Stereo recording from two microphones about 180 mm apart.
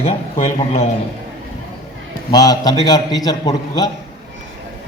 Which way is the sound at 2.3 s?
20° left (ahead or behind).